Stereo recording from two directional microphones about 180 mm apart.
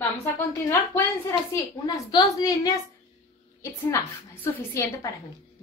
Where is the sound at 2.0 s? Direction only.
20° left (ahead or behind).